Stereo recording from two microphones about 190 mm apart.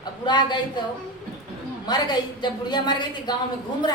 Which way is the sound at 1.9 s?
20° left (ahead or behind).